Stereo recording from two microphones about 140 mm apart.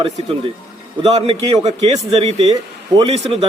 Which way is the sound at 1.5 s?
50° right (ahead or behind).